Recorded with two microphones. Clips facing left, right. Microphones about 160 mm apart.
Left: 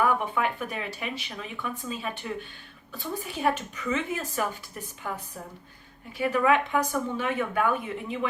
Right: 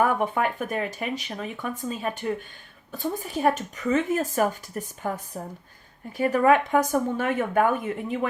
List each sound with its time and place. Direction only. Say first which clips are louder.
0.0 s speech: right 3 dB; 45° right (ahead or behind)